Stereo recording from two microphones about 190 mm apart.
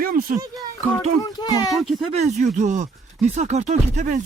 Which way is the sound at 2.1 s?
40° right (ahead or behind).